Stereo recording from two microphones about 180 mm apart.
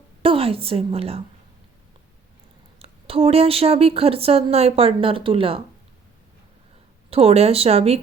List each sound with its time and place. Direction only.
0.2 s a woman's voice: 30° right (ahead or behind)
2.7 s speech: 30° right (ahead or behind)
7.1 s speech: 35° right (ahead or behind)